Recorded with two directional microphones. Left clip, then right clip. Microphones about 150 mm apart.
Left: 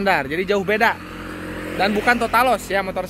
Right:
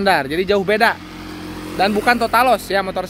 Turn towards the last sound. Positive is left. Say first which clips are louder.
# right 3 dB
turn(degrees=-45)  # may be behind; listen again after turning